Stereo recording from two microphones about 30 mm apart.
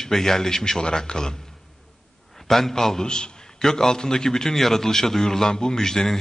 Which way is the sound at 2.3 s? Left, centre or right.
Centre.